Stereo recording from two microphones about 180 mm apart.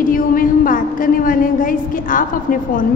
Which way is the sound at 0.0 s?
50° left (ahead or behind).